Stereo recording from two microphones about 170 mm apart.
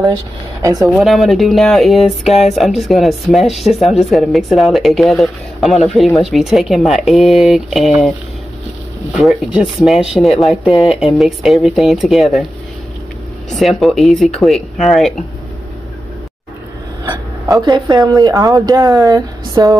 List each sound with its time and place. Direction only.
0.6 s speech: 20° right (ahead or behind)
0.9 s speech: centre (ahead or behind)
9.1 s speech: centre (ahead or behind)
13.5 s speech: centre (ahead or behind)
17.6 s speech: 20° right (ahead or behind)